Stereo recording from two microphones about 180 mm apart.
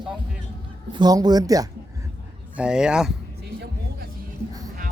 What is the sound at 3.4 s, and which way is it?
Music, 65° right (ahead or behind).